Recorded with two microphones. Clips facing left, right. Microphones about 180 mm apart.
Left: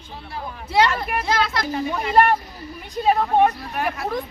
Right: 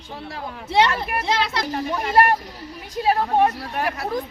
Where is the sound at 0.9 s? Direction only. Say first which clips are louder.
Even; centre (ahead or behind).